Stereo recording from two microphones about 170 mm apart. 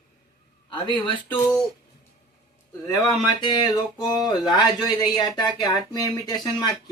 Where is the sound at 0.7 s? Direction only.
30° left (ahead or behind).